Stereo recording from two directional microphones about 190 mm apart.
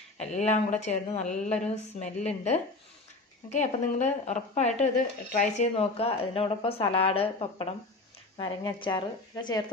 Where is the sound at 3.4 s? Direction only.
40° left (ahead or behind).